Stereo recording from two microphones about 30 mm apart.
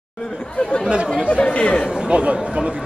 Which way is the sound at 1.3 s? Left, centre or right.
Left.